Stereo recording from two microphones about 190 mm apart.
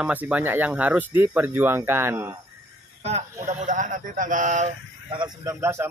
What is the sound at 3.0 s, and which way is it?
Speech, 35° right (ahead or behind).